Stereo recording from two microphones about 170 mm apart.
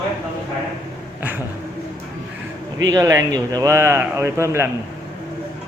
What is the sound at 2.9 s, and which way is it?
Speech, 20° right (ahead or behind).